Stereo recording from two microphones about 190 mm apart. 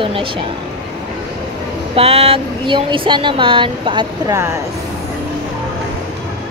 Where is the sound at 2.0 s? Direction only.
30° right (ahead or behind).